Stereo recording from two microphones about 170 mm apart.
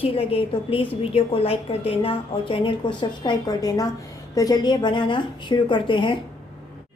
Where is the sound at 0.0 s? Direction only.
35° left (ahead or behind).